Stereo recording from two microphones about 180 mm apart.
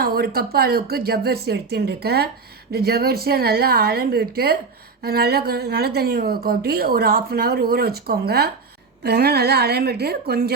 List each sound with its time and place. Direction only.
0.0 s a woman's voice: 60° right (ahead or behind)